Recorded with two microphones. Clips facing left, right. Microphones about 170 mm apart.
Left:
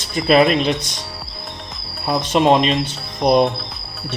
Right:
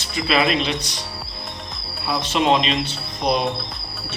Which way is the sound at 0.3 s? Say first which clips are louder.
Left 6 dB; 50° left (ahead or behind).